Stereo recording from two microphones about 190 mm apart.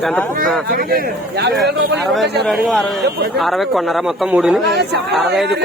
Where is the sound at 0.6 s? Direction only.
50° right (ahead or behind).